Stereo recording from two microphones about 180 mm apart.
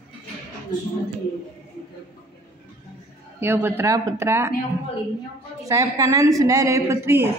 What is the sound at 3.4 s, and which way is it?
A woman's voice, 10° right (ahead or behind).